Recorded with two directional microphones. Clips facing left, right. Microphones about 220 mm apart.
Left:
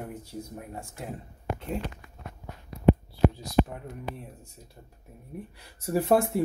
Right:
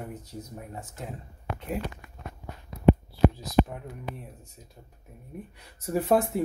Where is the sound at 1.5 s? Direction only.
45° left (ahead or behind).